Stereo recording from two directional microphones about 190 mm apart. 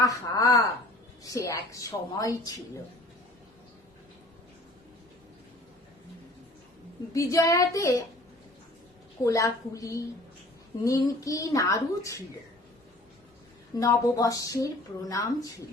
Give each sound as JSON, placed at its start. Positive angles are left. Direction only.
{"t": 0.0, "sound": "a woman's voice", "side_deg": 15}
{"t": 7.1, "sound": "a woman's voice", "side_deg": 15}
{"t": 9.2, "sound": "a woman's voice", "side_deg": 15}
{"t": 13.7, "sound": "a woman's voice", "side_deg": 15}